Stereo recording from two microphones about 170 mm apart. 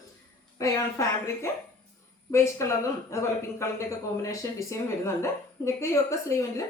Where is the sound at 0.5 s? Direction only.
20° left (ahead or behind).